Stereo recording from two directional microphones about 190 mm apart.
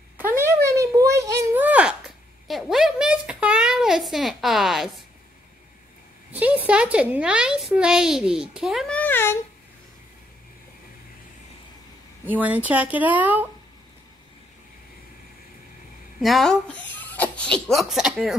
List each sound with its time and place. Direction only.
0.2 s a sound: 15° right (ahead or behind)
6.3 s speech: 10° right (ahead or behind); by 9.4 s 10° left (ahead or behind)
12.3 s speech: 10° right (ahead or behind)
16.2 s speech: centre (ahead or behind)